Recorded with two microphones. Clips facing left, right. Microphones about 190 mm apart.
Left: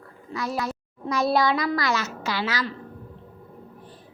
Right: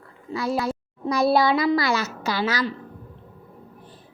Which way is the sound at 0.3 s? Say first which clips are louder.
Right 4 dB; 30° right (ahead or behind).